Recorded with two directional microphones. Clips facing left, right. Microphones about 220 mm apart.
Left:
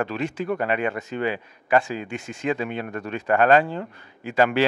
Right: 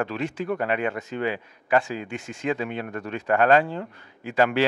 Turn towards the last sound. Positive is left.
turn(degrees=10)  # may be behind; listen again after turning